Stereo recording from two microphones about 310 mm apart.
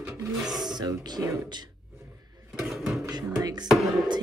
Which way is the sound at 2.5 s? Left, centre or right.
Centre.